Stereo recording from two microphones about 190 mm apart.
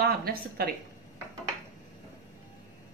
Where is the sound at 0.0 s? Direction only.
55° right (ahead or behind).